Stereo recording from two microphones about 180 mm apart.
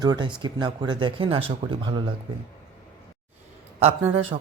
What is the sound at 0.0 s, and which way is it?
Speech, 25° right (ahead or behind).